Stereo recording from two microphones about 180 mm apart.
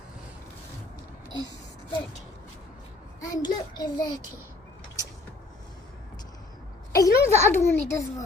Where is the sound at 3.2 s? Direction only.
20° left (ahead or behind).